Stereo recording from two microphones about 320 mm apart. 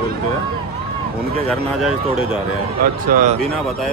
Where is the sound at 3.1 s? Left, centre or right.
Right.